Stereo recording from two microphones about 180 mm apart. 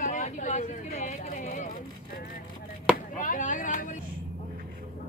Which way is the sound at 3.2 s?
45° left (ahead or behind).